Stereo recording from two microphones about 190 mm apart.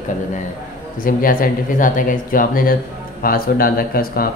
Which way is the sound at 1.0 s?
50° left (ahead or behind).